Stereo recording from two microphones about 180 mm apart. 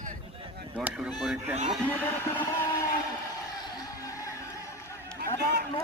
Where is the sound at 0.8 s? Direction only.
5° right (ahead or behind).